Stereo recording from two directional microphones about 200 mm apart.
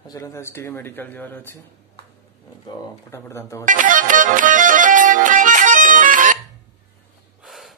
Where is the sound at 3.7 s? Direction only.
40° right (ahead or behind).